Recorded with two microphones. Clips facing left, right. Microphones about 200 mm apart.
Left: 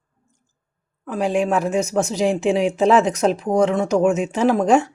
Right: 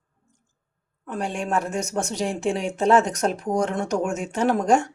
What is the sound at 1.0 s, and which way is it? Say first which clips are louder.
Speech: left 8 dB; 90° left.